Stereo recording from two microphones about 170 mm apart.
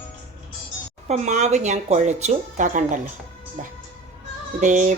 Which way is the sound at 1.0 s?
45° right (ahead or behind).